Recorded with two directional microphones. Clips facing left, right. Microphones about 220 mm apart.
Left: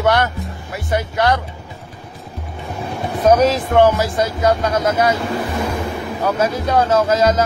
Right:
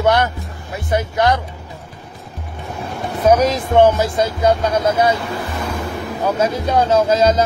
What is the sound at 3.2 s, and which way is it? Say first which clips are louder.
Speech: left 1 dB; 10° right (ahead or behind).